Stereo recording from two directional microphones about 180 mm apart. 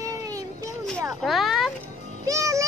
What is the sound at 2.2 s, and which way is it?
Music, 15° right (ahead or behind).